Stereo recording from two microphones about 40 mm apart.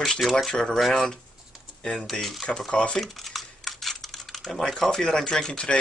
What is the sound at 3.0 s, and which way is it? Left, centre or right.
Computer keyboard, centre.